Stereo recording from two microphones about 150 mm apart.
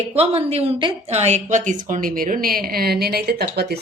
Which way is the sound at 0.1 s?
45° right (ahead or behind).